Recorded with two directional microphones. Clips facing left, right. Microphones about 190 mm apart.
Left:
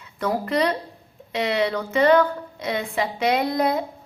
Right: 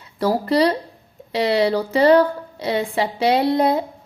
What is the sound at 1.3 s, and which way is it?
A woman's voice, 35° right (ahead or behind).